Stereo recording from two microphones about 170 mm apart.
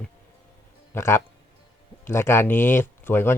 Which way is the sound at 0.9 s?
15° left (ahead or behind).